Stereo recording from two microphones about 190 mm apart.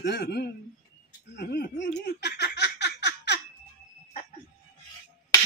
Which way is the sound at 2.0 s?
60° left (ahead or behind).